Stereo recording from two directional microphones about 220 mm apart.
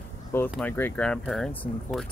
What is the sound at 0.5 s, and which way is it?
Speech, 10° left (ahead or behind).